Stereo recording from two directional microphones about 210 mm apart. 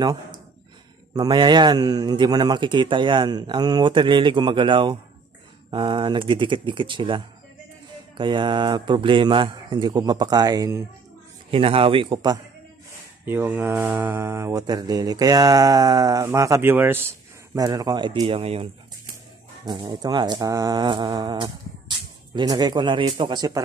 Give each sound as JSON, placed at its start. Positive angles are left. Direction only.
{"t": 1.1, "sound": "speech", "side_deg": -20}
{"t": 11.5, "sound": "speech", "side_deg": -25}
{"t": 13.2, "sound": "mantra", "side_deg": -10}
{"t": 17.6, "sound": "speech", "side_deg": -20}